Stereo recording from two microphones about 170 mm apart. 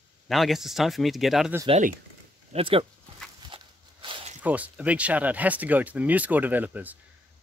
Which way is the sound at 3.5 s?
30° right (ahead or behind).